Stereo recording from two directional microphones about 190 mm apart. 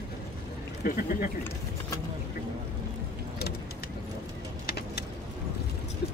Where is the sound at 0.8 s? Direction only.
45° left (ahead or behind).